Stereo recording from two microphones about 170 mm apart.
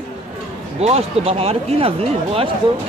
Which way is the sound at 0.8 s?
35° right (ahead or behind).